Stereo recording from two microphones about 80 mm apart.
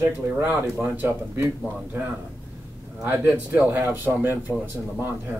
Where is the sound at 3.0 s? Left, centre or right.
Right.